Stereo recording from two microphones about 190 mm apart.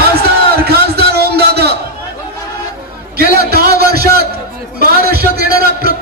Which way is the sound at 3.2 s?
55° right (ahead or behind).